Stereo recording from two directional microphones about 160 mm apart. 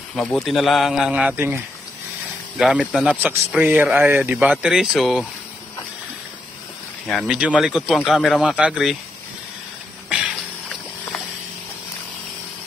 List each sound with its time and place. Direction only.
0.1 s speech: 5° left (ahead or behind)
7.1 s speech: 5° right (ahead or behind)
10.0 s a sound: 5° right (ahead or behind)